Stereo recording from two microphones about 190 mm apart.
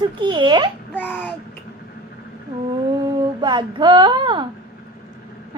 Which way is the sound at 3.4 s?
25° right (ahead or behind).